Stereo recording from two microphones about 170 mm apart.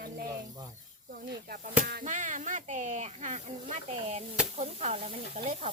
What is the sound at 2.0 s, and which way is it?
Speech, 50° right (ahead or behind).